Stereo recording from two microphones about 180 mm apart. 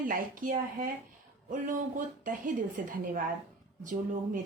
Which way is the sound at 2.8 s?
50° right (ahead or behind).